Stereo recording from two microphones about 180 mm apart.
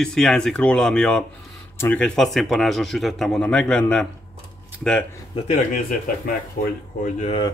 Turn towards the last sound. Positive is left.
turn(degrees=40)  # may be behind; listen again after turning